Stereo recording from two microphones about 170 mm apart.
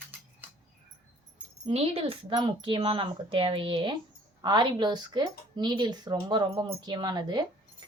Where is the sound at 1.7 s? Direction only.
35° right (ahead or behind).